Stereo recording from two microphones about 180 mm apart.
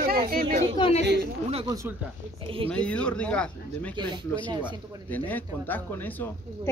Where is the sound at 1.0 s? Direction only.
70° right (ahead or behind).